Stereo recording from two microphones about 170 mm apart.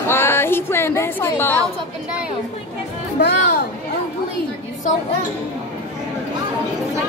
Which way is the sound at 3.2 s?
75° left (ahead or behind).